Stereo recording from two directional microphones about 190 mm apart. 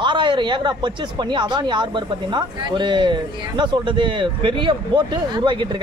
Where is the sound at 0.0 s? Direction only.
25° right (ahead or behind).